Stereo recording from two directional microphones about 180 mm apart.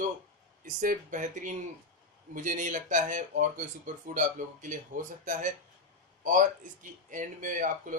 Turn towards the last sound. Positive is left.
turn(degrees=-50)  # may be behind; listen again after turning